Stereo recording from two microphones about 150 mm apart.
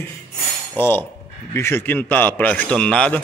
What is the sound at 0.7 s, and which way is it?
A man's voice, 15° left (ahead or behind).